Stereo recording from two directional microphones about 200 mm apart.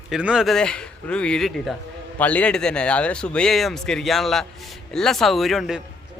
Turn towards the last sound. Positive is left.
turn(degrees=0)  # may be behind; listen again after turning